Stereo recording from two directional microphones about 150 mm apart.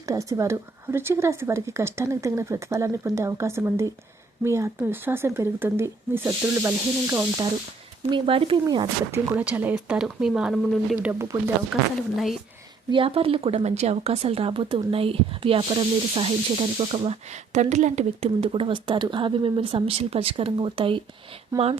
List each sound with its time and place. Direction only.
0.0 s speech: 20° right (ahead or behind)
8.1 s speech: 35° right (ahead or behind)
9.1 s speech: 10° right (ahead or behind)
11.0 s speech: 15° right (ahead or behind)
11.7 s speech: centre (ahead or behind)
12.9 s speech: 40° right (ahead or behind)